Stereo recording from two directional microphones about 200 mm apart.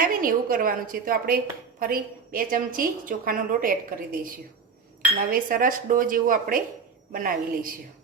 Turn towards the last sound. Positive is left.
turn(degrees=-45)  # may be behind; listen again after turning